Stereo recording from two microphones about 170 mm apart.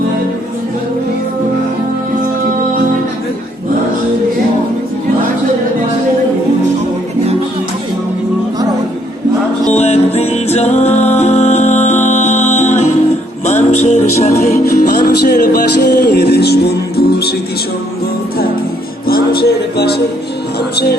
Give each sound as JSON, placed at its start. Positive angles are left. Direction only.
{"t": 9.7, "sound": "music", "side_deg": 40}
{"t": 14.6, "sound": "music", "side_deg": 60}
{"t": 19.0, "sound": "music", "side_deg": 65}